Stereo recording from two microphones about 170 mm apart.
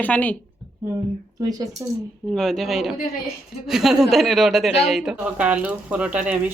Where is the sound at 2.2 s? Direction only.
Centre (ahead or behind).